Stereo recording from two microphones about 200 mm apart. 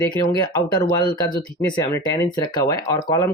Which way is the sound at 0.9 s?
20° left (ahead or behind).